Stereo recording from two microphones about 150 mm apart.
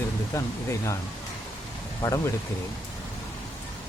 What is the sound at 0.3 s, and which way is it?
Speech, 20° left (ahead or behind).